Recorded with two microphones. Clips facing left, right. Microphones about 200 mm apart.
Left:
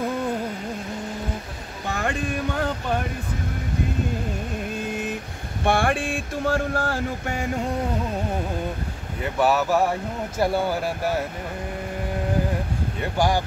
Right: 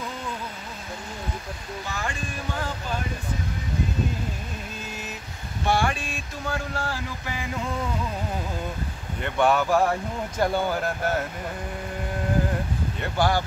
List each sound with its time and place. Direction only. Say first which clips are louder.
1.9 s boat: left 8 dB; 60° left (ahead or behind)
4.8 s vehicle: left 9 dB; 55° left (ahead or behind)
5.6 s a sound: left 3 dB; 55° left (ahead or behind)
9.2 s speech: left 1 dB; 5° left (ahead or behind)
13.2 s speech: left 1 dB; 15° left (ahead or behind)